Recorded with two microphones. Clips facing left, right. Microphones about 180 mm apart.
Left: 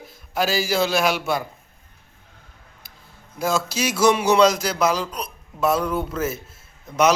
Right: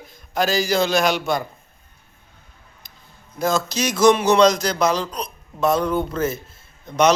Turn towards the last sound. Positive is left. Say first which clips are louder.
# right 2 dB
turn(degrees=5)  # may be behind; listen again after turning